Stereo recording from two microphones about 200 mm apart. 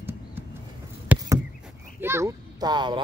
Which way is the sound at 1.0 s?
10° right (ahead or behind).